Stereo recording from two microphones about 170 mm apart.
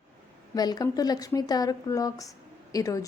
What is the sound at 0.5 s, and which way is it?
A woman's voice, 20° left (ahead or behind).